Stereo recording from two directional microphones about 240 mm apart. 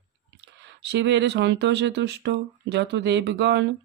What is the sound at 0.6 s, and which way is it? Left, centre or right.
Speech, right.